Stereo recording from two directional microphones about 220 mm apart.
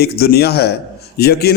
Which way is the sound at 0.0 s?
45° left (ahead or behind).